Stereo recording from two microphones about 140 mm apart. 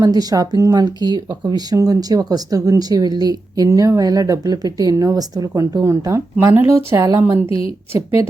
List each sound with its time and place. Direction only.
0.0 s speech: 25° right (ahead or behind)